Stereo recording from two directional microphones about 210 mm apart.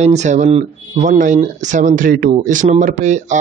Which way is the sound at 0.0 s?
35° right (ahead or behind).